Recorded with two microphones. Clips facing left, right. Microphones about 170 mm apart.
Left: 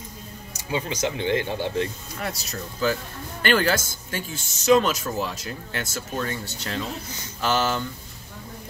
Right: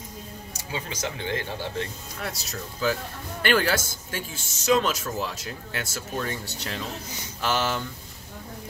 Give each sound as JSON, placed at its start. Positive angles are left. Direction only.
{"t": 0.7, "sound": "speech", "side_deg": 20}
{"t": 2.1, "sound": "speech", "side_deg": 0}
{"t": 7.4, "sound": "speech", "side_deg": -5}